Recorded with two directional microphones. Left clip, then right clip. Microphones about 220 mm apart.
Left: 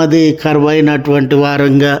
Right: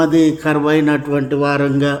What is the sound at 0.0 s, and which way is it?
A man's voice, 35° left (ahead or behind).